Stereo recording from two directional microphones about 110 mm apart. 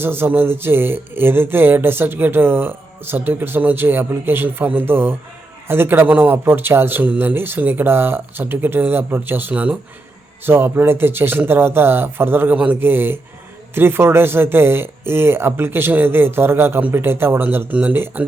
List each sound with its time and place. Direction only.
0.0 s speech: 20° right (ahead or behind)